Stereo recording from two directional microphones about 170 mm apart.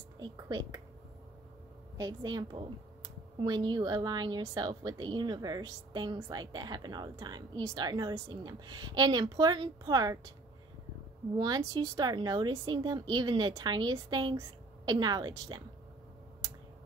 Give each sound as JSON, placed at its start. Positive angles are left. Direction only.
{"t": 0.2, "sound": "a woman's voice", "side_deg": -25}
{"t": 2.0, "sound": "a woman's voice", "side_deg": -25}
{"t": 11.3, "sound": "a woman's voice", "side_deg": -25}